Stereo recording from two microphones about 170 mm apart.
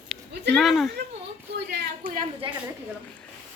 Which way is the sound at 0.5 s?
Centre (ahead or behind).